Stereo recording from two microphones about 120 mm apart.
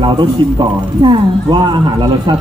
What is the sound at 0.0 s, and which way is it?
Speech, 40° right (ahead or behind).